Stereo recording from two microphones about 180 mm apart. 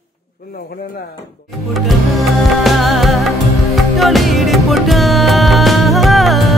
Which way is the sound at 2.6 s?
Centre (ahead or behind).